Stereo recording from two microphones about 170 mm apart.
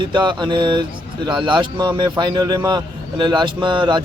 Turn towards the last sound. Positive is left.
turn(degrees=-30)  # may be behind; listen again after turning